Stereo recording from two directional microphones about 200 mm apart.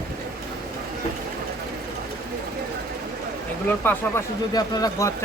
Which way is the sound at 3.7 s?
10° left (ahead or behind).